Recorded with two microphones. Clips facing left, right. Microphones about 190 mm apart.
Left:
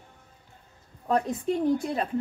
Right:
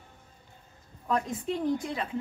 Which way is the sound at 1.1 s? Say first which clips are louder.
Left 4 dB; 40° left (ahead or behind).